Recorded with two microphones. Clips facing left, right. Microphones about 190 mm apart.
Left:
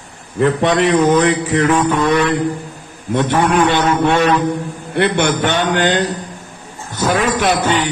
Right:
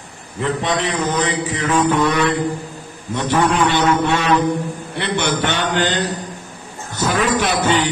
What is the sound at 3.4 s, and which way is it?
A man's voice, 55° left (ahead or behind).